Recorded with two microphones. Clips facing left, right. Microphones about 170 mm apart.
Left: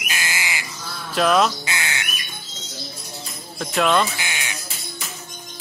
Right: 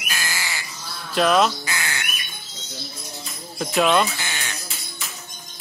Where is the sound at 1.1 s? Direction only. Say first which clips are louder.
Even; centre (ahead or behind).